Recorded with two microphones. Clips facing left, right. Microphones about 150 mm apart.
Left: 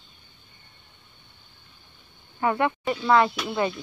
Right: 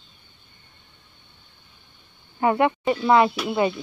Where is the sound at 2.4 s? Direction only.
15° right (ahead or behind).